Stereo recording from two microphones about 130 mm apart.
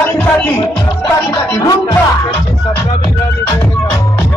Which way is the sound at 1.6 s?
30° left (ahead or behind).